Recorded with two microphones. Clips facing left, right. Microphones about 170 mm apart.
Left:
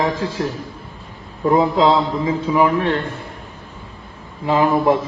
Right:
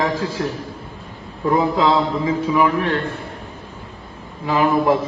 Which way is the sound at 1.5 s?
25° left (ahead or behind).